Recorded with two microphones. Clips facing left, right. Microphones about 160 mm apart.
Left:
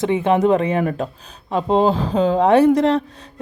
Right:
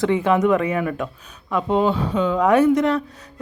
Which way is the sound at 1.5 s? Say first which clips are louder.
Left 3 dB; 30° left (ahead or behind).